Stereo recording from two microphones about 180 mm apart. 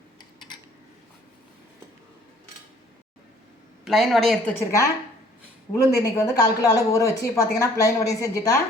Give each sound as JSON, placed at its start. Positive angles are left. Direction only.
{"t": 3.8, "sound": "speech", "side_deg": 0}
{"t": 5.7, "sound": "speech", "side_deg": 20}